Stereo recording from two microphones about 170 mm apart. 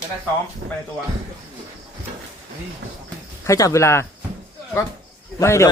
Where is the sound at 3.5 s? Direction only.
20° left (ahead or behind).